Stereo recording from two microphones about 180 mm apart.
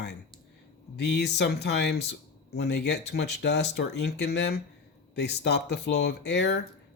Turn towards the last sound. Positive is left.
turn(degrees=75)  # may be behind; listen again after turning